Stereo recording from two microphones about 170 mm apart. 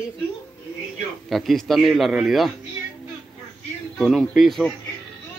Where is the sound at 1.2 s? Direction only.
Centre (ahead or behind).